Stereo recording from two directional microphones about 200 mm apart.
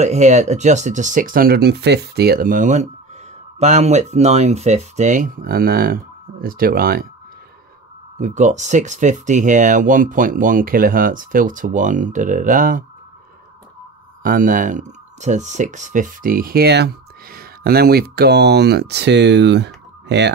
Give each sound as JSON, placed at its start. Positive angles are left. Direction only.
{"t": 0.0, "sound": "speech", "side_deg": -35}
{"t": 8.2, "sound": "speech", "side_deg": -35}
{"t": 14.2, "sound": "speech", "side_deg": -45}